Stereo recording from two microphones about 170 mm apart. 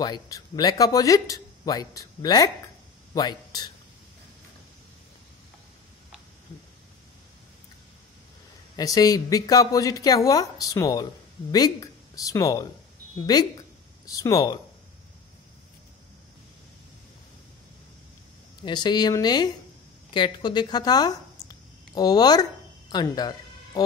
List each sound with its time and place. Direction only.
0.0 s speech: 25° left (ahead or behind)
8.7 s speech: 20° left (ahead or behind)
18.6 s speech: 25° left (ahead or behind)